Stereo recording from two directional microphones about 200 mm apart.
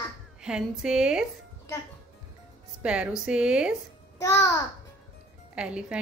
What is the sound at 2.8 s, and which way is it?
Speech, 5° right (ahead or behind).